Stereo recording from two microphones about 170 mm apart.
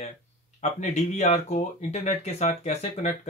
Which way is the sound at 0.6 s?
45° left (ahead or behind).